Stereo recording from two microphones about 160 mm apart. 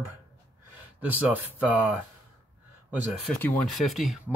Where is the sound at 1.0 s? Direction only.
10° right (ahead or behind).